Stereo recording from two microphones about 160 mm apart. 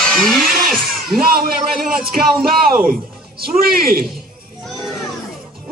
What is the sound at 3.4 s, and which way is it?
Speech, 70° right (ahead or behind).